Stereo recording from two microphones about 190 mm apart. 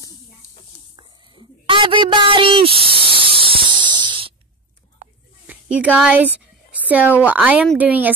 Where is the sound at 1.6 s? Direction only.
25° right (ahead or behind).